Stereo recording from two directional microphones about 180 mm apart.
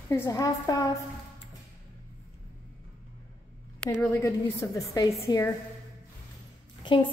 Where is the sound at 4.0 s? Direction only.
10° left (ahead or behind).